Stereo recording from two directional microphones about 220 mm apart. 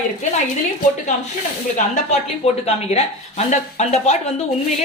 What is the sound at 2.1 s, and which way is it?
Speech, 30° left (ahead or behind).